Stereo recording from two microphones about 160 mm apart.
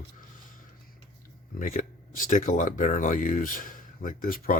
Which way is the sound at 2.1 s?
55° left (ahead or behind).